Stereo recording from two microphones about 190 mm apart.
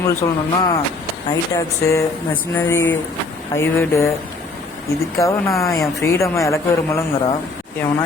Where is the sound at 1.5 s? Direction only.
15° left (ahead or behind).